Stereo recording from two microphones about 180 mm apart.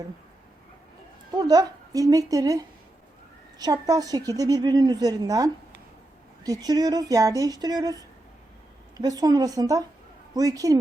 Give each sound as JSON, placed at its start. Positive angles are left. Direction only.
{"t": 1.4, "sound": "a woman's voice", "side_deg": -20}